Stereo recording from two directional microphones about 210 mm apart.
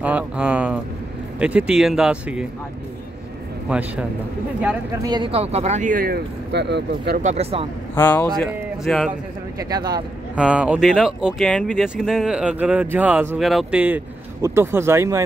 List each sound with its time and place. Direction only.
0.0 s speech: 5° right (ahead or behind)
3.6 s speech: 5° right (ahead or behind)
5.0 s speech: 20° right (ahead or behind); by 7.2 s 55° right (ahead or behind)
7.2 s speech: 30° right (ahead or behind)
7.9 s speech: 10° left (ahead or behind)
9.6 s speech: 20° right (ahead or behind)
10.3 s speech: 5° right (ahead or behind)